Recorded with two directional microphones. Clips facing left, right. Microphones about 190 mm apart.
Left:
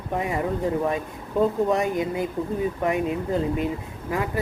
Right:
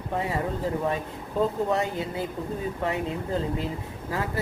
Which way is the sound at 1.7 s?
15° left (ahead or behind).